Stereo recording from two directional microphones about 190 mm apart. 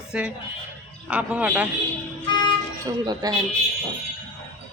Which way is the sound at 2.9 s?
20° right (ahead or behind).